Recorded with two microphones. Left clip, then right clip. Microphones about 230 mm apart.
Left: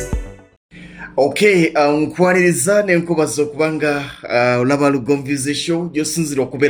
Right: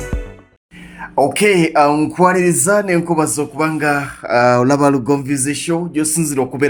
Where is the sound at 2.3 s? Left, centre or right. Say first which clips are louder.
Left 1 dB; right.